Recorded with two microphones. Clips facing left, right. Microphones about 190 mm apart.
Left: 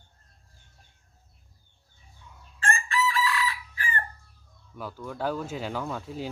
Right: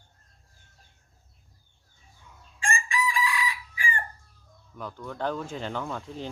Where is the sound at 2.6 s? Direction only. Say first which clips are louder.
Left 2 dB; 10° right (ahead or behind).